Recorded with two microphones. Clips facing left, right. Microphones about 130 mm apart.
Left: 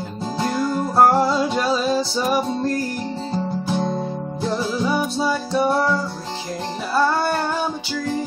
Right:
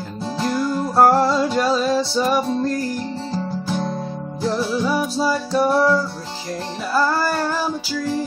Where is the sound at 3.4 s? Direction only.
25° left (ahead or behind).